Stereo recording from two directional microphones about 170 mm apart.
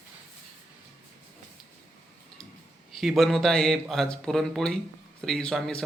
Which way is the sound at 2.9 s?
Centre (ahead or behind).